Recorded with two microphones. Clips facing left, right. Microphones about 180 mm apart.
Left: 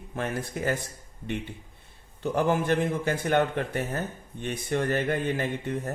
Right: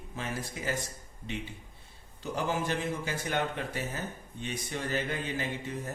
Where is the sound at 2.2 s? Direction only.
55° left (ahead or behind).